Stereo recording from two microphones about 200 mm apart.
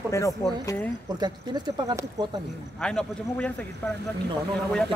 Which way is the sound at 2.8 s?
5° left (ahead or behind).